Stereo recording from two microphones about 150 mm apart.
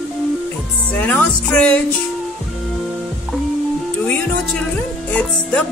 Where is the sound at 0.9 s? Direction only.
10° left (ahead or behind).